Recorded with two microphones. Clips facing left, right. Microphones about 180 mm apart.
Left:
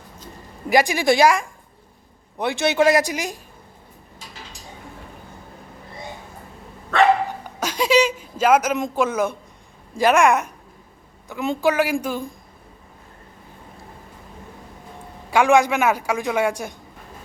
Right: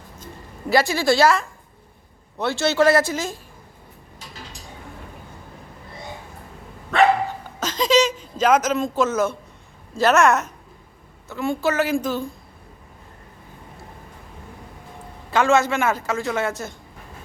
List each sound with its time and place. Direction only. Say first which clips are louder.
0.7 s a man's voice: left 1 dB; 15° left (ahead or behind)
7.6 s a man's voice: even; 10° left (ahead or behind)
15.3 s a man's voice: left 2 dB; 10° left (ahead or behind)